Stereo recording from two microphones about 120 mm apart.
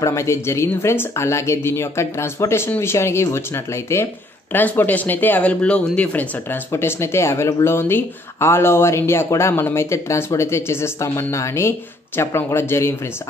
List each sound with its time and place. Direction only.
0.0 s speech: 25° left (ahead or behind)